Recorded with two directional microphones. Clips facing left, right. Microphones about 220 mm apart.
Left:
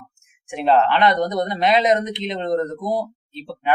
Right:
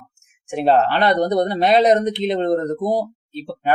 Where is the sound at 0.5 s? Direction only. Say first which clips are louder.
Right 1 dB; 40° right (ahead or behind).